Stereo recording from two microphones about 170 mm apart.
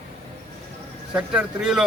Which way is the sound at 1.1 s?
5° right (ahead or behind).